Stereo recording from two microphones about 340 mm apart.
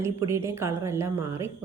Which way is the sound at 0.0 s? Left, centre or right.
Centre.